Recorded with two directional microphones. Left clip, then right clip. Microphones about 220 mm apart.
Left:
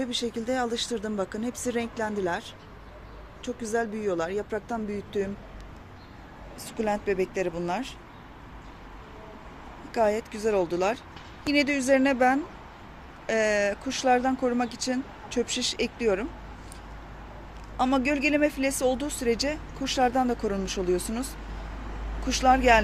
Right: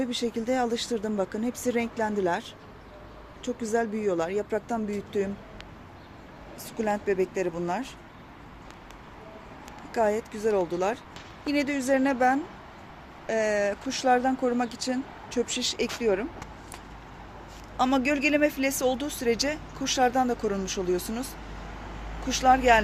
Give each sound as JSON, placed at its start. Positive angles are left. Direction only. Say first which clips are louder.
{"t": 0.0, "sound": "speech", "louder": "right 1 dB", "side_deg": -5}
{"t": 6.7, "sound": "speech", "louder": "even", "side_deg": 0}
{"t": 9.9, "sound": "speech", "louder": "left 1 dB", "side_deg": 0}
{"t": 17.7, "sound": "speech", "louder": "even", "side_deg": 0}